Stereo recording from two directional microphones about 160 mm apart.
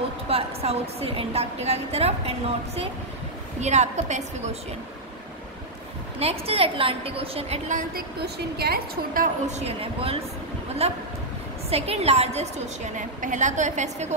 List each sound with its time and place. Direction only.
0.3 s a woman's voice: 40° right (ahead or behind)
6.1 s a woman's voice: 40° right (ahead or behind)
8.2 s a woman's voice: 75° right (ahead or behind); by 9.6 s 60° right (ahead or behind)
9.7 s a woman's voice: 35° right (ahead or behind)